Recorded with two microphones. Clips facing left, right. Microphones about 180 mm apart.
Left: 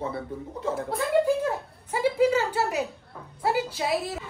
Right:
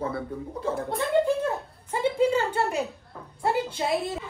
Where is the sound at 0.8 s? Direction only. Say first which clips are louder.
Left 1 dB; 5° left (ahead or behind).